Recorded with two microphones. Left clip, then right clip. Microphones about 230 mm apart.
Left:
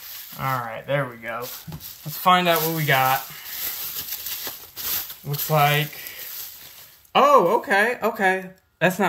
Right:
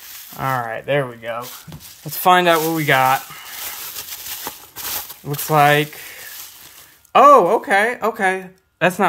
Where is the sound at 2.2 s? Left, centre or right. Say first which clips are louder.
Right 5 dB; right.